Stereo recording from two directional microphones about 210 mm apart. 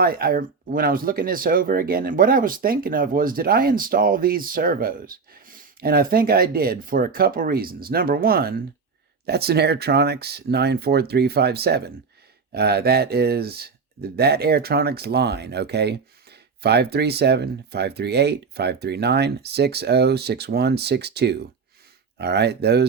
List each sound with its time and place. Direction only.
0.0 s speech: 45° right (ahead or behind)